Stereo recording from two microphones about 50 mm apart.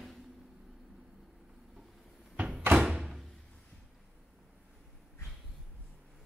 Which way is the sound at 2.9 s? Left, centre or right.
Centre.